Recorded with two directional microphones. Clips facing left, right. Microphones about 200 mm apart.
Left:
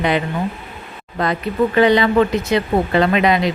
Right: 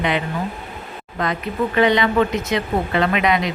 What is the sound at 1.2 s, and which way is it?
Speech, 35° left (ahead or behind).